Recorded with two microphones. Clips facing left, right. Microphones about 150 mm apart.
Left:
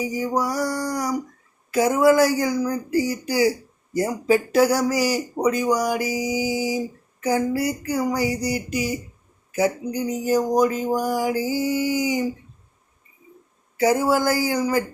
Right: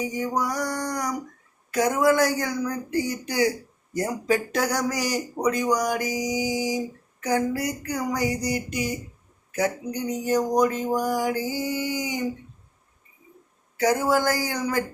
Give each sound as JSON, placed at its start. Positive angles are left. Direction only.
{"t": 0.0, "sound": "speech", "side_deg": 5}
{"t": 13.7, "sound": "speech", "side_deg": 10}